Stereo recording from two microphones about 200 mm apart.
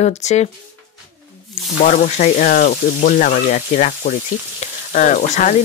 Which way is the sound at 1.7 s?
35° left (ahead or behind).